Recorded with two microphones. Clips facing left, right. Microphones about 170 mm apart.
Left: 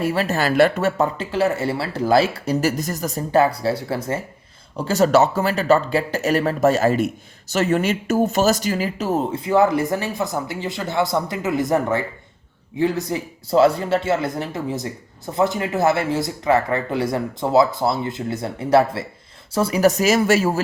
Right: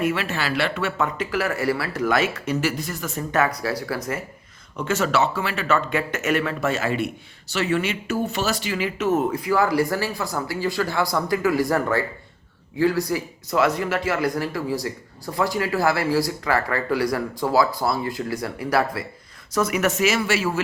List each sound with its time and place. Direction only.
0.0 s speech: 35° left (ahead or behind)